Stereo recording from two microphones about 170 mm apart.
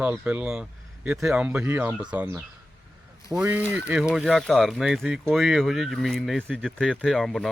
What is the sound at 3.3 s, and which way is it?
Speech, 5° right (ahead or behind).